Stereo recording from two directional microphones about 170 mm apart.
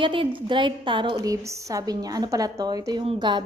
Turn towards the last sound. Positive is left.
turn(degrees=-25)  # may be behind; listen again after turning